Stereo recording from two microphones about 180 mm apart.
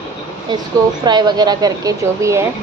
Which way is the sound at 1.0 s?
25° right (ahead or behind).